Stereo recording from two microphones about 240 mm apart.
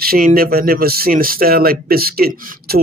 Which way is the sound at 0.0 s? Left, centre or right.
Right.